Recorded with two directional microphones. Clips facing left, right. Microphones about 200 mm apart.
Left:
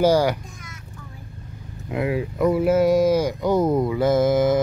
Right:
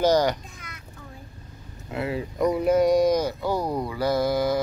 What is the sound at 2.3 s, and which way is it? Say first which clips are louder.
Speech: left 2 dB; 5° left (ahead or behind).